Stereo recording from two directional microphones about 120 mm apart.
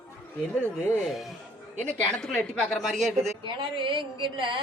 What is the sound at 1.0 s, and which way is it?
A man's voice, centre (ahead or behind).